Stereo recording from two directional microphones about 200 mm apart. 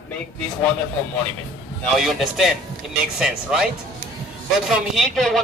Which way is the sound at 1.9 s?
Centre (ahead or behind).